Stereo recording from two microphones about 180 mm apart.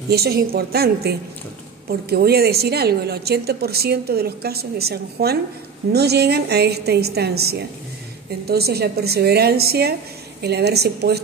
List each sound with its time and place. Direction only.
0.1 s a woman's voice: 60° right (ahead or behind)